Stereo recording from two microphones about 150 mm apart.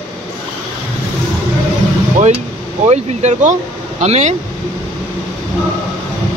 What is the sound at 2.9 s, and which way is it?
Speech, 50° right (ahead or behind).